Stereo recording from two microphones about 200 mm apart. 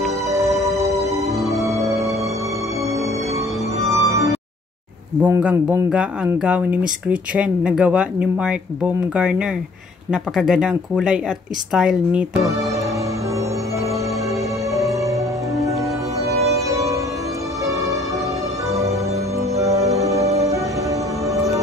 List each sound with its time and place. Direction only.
1.6 s music: 15° right (ahead or behind)
3.9 s music: 15° right (ahead or behind)
5.2 s speech: 5° right (ahead or behind)
14.7 s music: centre (ahead or behind)
19.7 s music: 30° right (ahead or behind)